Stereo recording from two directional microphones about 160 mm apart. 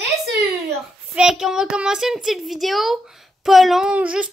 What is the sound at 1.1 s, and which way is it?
A child's voice, 5° right (ahead or behind).